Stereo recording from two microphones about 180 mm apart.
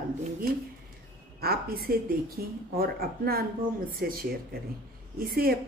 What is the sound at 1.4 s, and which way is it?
A woman's voice, 55° right (ahead or behind).